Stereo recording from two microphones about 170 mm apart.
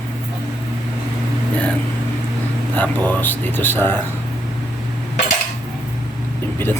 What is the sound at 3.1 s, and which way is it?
Speech, 10° left (ahead or behind).